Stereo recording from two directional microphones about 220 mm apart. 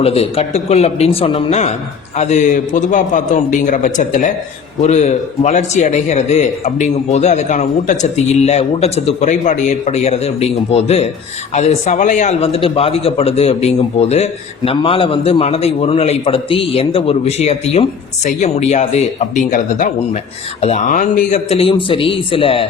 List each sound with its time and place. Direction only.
0.0 s a man's voice: 25° left (ahead or behind)